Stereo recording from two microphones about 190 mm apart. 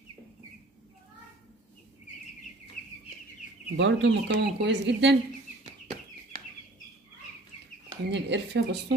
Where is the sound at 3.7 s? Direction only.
70° right (ahead or behind).